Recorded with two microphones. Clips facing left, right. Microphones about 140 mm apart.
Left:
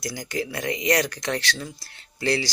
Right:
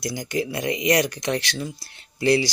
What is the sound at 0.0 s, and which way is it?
Speech, 20° right (ahead or behind).